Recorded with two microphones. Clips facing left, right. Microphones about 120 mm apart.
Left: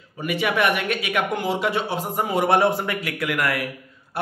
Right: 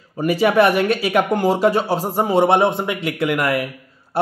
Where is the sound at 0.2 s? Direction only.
35° right (ahead or behind).